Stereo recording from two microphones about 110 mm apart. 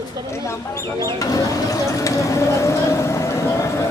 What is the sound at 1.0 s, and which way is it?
Speech, 30° left (ahead or behind).